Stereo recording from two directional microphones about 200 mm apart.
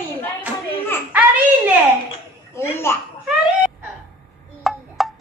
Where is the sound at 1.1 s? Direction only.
10° right (ahead or behind).